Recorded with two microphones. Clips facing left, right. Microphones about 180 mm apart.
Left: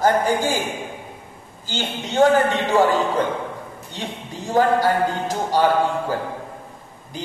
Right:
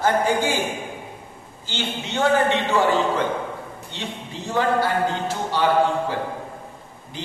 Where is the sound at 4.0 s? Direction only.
40° left (ahead or behind).